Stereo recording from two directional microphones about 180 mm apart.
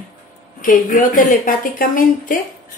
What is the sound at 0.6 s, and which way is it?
A woman's voice, 50° left (ahead or behind).